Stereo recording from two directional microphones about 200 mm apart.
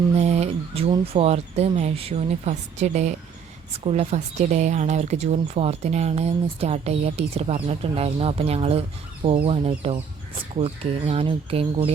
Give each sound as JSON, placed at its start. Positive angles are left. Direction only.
{"t": 0.2, "sound": "speech", "side_deg": -35}